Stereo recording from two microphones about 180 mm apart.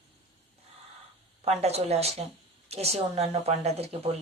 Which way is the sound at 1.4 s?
35° right (ahead or behind).